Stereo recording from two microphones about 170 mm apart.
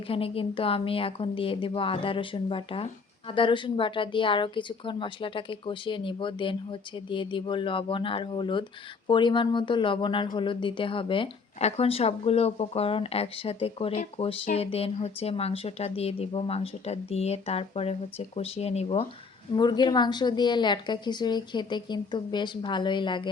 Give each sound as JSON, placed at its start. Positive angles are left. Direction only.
{"t": 0.1, "sound": "a woman's voice", "side_deg": 35}
{"t": 19.5, "sound": "a woman's voice", "side_deg": 25}